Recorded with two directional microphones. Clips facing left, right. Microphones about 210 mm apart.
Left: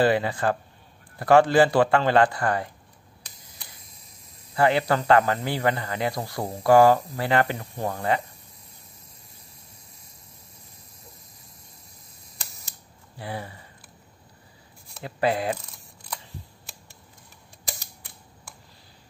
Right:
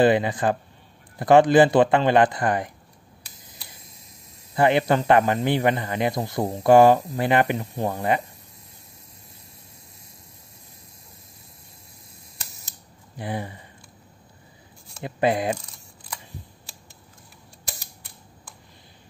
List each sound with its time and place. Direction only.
0.0 s speech: 20° right (ahead or behind)
4.6 s speech: 20° right (ahead or behind)
13.2 s speech: 20° right (ahead or behind)
15.0 s speech: 20° right (ahead or behind)